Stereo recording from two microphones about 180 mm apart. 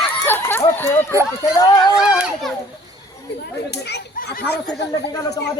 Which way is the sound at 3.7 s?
65° left (ahead or behind).